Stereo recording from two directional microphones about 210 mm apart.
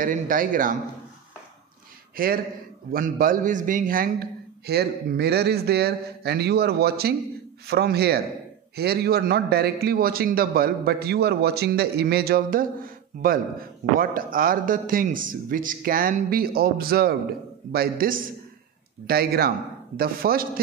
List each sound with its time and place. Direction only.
0.0 s a man's voice: 40° right (ahead or behind)
2.1 s a man's voice: 45° right (ahead or behind)